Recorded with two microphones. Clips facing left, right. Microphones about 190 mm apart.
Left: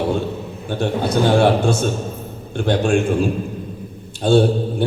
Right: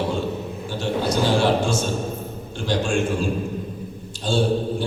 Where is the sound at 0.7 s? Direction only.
55° left (ahead or behind).